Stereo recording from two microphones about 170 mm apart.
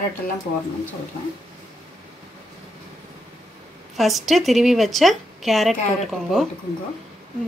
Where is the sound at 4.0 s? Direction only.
Centre (ahead or behind).